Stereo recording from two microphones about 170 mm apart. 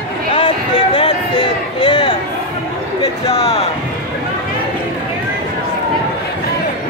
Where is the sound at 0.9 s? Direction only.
30° left (ahead or behind).